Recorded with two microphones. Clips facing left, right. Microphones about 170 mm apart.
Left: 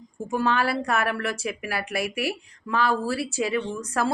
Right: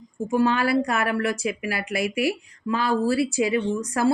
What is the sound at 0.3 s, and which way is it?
A woman's voice, 15° right (ahead or behind).